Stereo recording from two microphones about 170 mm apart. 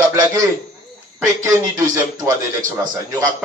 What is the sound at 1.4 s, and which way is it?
Speech, 15° right (ahead or behind).